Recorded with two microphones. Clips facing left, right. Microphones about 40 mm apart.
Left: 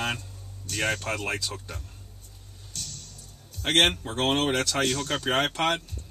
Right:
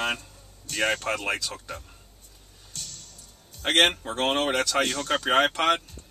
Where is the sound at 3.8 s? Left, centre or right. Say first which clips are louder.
Right 1 dB; centre.